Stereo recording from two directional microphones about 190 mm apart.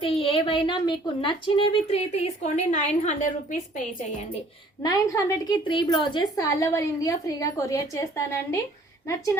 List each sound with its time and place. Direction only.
0.0 s a woman's voice: 30° left (ahead or behind)
4.8 s a woman's voice: 20° left (ahead or behind)